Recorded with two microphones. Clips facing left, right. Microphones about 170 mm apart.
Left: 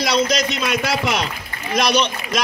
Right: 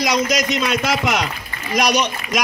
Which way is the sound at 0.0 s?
15° right (ahead or behind).